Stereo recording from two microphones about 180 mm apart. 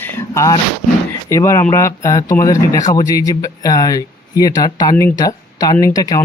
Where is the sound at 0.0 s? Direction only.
15° left (ahead or behind).